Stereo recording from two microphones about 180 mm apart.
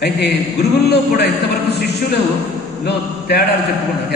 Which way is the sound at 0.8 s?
65° left (ahead or behind).